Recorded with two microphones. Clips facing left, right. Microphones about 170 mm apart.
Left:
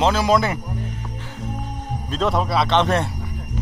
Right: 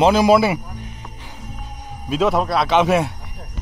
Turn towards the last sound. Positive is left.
turn(degrees=-5)  # may be behind; listen again after turning